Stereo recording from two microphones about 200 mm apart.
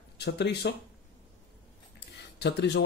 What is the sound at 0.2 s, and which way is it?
Speech, 55° left (ahead or behind).